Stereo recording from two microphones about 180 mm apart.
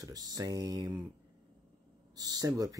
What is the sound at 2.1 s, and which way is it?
Speech, 20° right (ahead or behind).